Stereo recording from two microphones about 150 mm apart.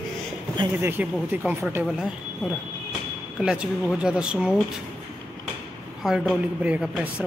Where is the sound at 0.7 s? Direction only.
10° right (ahead or behind).